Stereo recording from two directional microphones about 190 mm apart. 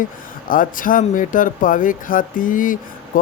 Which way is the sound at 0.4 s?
45° left (ahead or behind).